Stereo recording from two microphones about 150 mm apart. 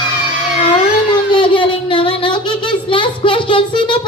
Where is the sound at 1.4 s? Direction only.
35° left (ahead or behind).